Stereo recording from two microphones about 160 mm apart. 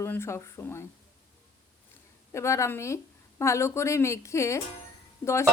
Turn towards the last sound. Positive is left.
turn(degrees=15)  # may be behind; listen again after turning